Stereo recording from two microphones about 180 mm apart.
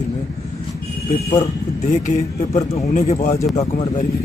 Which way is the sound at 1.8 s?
40° left (ahead or behind).